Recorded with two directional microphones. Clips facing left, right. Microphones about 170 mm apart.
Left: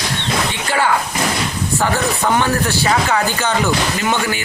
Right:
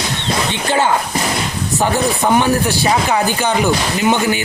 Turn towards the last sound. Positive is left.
turn(degrees=-20)  # may be behind; listen again after turning